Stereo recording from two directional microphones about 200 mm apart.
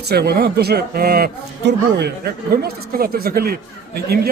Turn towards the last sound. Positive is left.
turn(degrees=-50)  # may be behind; listen again after turning